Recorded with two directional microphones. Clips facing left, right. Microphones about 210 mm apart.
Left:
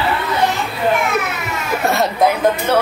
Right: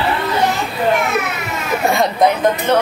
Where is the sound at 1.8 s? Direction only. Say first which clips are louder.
Right 1 dB; centre (ahead or behind).